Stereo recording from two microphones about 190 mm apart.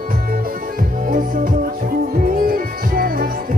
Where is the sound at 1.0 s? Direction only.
45° right (ahead or behind).